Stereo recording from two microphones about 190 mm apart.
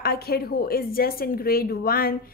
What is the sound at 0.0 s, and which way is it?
Speech, 55° left (ahead or behind).